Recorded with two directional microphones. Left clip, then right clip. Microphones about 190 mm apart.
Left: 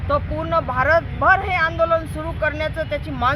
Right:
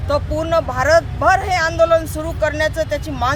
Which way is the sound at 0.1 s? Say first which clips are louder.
Right 3 dB; 15° right (ahead or behind).